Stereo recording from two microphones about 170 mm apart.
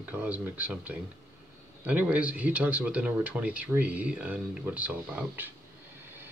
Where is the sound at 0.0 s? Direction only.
10° right (ahead or behind).